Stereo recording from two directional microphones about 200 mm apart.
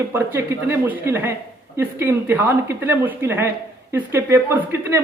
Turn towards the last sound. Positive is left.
turn(degrees=-10)  # may be behind; listen again after turning